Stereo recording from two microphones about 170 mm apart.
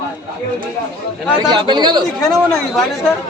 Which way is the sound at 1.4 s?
25° right (ahead or behind).